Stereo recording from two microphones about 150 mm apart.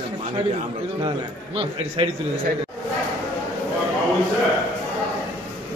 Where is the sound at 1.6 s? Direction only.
35° right (ahead or behind).